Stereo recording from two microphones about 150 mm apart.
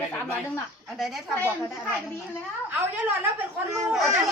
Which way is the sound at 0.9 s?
Centre (ahead or behind).